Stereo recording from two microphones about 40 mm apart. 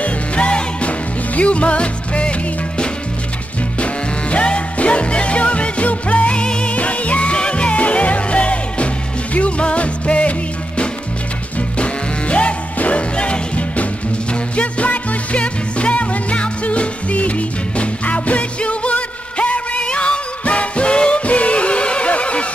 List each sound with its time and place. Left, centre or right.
0.0 s music: left
3.8 s music: left
6.7 s music: left
11.8 s music: left
13.1 s music: left